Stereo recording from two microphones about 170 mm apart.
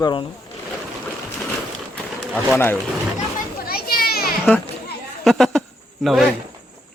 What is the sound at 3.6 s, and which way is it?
Children playing, 65° left (ahead or behind).